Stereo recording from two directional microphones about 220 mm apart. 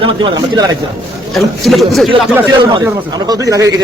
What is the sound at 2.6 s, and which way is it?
A man's voice, 20° right (ahead or behind).